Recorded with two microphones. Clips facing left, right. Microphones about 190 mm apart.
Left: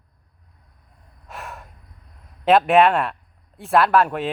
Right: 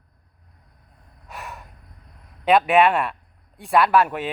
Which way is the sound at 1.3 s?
Centre (ahead or behind).